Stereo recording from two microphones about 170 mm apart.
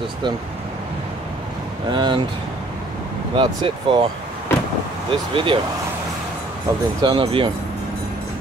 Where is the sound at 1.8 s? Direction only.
25° right (ahead or behind).